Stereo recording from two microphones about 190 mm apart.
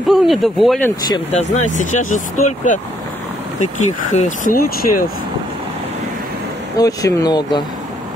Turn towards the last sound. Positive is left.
turn(degrees=20)  # may be behind; listen again after turning